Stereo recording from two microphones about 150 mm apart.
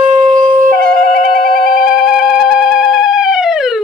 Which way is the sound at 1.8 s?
5° right (ahead or behind).